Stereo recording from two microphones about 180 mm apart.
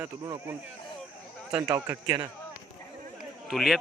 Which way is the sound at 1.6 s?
15° right (ahead or behind).